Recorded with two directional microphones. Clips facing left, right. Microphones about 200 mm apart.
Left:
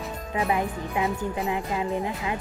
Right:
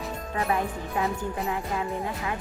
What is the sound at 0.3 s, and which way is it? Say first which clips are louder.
A woman's voice: left 2 dB; 20° left (ahead or behind).